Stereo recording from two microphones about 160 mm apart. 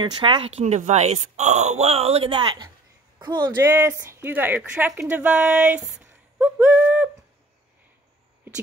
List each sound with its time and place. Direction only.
0.0 s speech: 30° right (ahead or behind)
3.7 s speech: 15° right (ahead or behind)